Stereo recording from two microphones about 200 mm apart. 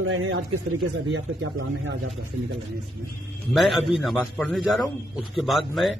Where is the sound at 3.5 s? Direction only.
Centre (ahead or behind).